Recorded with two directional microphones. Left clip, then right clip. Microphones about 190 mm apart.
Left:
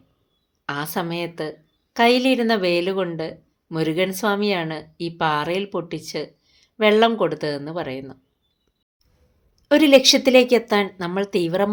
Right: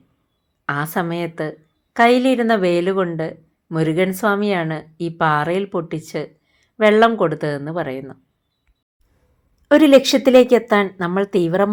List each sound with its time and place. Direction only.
0.6 s a woman's voice: 20° right (ahead or behind)
9.6 s a woman's voice: 20° right (ahead or behind)